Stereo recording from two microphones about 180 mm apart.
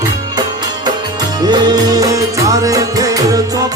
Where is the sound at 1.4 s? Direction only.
25° right (ahead or behind).